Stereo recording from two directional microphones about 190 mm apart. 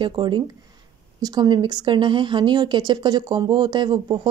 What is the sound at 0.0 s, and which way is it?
Speech, 25° right (ahead or behind).